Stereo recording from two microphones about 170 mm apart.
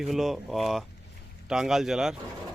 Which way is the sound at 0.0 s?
Centre (ahead or behind).